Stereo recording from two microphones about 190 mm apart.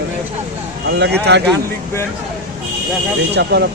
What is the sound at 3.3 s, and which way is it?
Speech, 65° right (ahead or behind).